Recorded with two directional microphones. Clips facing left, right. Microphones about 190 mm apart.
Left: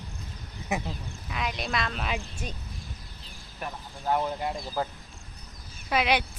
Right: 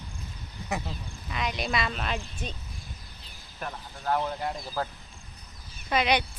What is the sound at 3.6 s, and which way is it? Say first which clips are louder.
Speech: left 1 dB; 10° left (ahead or behind).